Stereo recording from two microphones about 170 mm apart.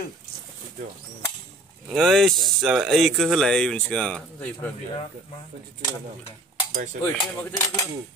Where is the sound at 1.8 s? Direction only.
Centre (ahead or behind).